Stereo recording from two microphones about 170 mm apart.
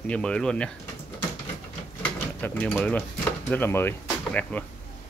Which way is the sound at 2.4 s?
10° left (ahead or behind).